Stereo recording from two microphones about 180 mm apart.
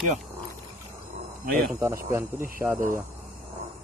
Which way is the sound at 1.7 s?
15° right (ahead or behind).